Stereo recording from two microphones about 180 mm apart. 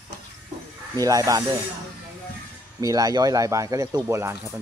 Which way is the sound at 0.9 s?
20° right (ahead or behind).